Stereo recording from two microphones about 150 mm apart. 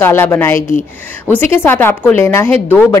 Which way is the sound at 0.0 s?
15° left (ahead or behind).